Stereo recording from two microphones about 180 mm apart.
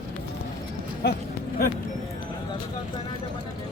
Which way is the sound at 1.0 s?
65° left (ahead or behind).